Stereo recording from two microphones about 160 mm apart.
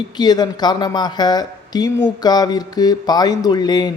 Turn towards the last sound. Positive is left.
turn(degrees=25)  # may be behind; listen again after turning